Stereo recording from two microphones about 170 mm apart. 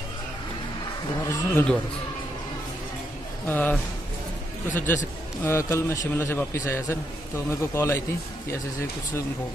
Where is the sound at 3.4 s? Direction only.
10° left (ahead or behind).